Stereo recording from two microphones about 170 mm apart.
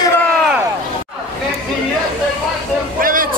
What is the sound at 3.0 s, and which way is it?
Vehicle, 55° right (ahead or behind).